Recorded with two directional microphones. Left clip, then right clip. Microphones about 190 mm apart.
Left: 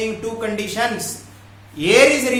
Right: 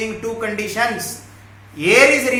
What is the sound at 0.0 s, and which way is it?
A woman's voice, 10° left (ahead or behind).